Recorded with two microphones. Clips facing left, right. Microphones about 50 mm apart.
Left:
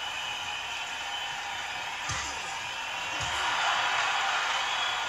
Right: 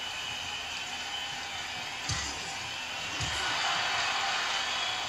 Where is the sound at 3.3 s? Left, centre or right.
Left.